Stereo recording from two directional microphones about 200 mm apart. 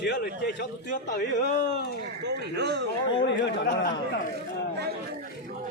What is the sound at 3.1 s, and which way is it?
Speech, 60° left (ahead or behind).